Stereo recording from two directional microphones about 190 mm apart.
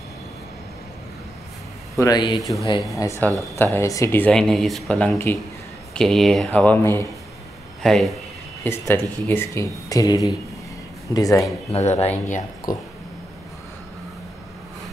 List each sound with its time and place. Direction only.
2.0 s speech: 20° left (ahead or behind)
7.8 s a man's voice: centre (ahead or behind); by 11.4 s 20° left (ahead or behind)
11.7 s speech: 35° left (ahead or behind)